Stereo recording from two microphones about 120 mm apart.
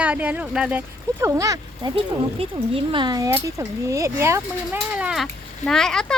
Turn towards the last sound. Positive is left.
turn(degrees=5)  # may be behind; listen again after turning